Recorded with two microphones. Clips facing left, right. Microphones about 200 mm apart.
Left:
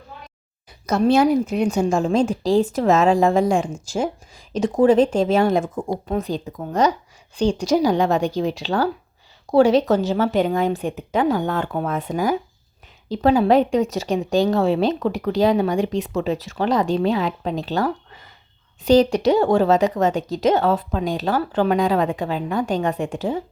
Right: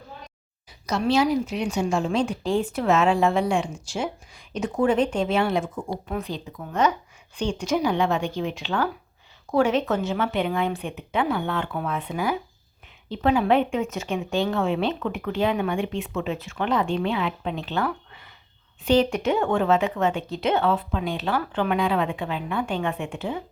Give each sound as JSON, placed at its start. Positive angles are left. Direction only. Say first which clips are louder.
{"t": 0.9, "sound": "a woman's voice", "louder": "left 5 dB", "side_deg": 50}